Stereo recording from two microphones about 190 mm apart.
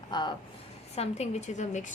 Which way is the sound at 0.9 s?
35° left (ahead or behind).